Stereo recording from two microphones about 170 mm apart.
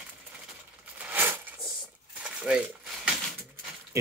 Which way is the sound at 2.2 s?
5° right (ahead or behind).